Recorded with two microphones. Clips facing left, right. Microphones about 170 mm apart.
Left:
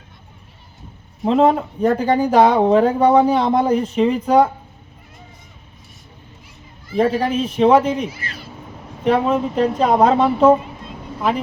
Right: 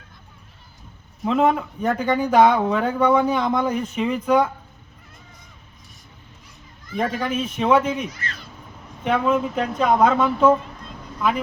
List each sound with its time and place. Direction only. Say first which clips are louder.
1.2 s speech: left 4 dB; 30° left (ahead or behind)
6.8 s speech: left 7 dB; 30° left (ahead or behind)
8.1 s a sound: left 1 dB; 10° left (ahead or behind)
9.0 s speech: left 3 dB; 30° left (ahead or behind)